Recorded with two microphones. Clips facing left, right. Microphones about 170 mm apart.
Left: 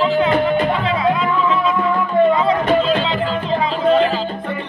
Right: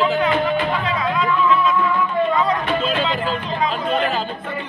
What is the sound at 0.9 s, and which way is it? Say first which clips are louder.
Music: left 3 dB; 25° left (ahead or behind).